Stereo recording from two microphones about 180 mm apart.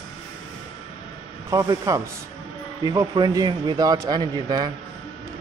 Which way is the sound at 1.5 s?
20° right (ahead or behind).